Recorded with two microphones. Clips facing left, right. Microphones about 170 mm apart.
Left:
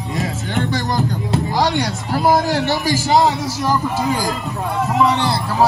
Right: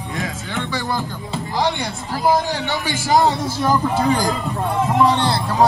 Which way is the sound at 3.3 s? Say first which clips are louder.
Even; 55° right (ahead or behind).